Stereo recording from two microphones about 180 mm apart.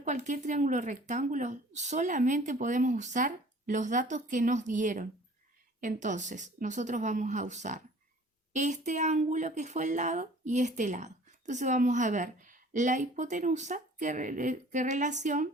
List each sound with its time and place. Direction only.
0.0 s speech: 45° right (ahead or behind)